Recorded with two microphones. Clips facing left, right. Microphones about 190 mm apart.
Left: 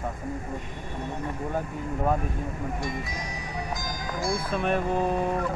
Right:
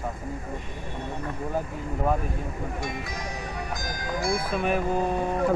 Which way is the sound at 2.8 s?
60° right (ahead or behind).